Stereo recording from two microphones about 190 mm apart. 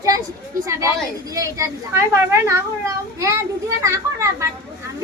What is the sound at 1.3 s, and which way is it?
A child's voice, 15° right (ahead or behind).